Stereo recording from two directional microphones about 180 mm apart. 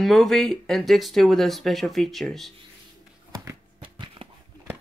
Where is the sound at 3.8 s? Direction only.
30° right (ahead or behind).